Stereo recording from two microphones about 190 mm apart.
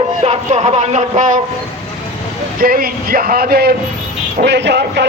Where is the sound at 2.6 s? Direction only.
50° right (ahead or behind).